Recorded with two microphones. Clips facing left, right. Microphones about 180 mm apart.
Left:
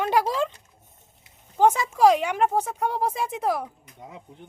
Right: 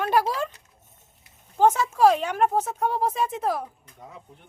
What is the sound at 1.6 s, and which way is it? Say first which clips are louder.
A woman's voice: even; 15° left (ahead or behind).